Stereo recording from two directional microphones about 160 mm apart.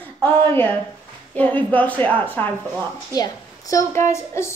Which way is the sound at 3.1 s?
20° left (ahead or behind).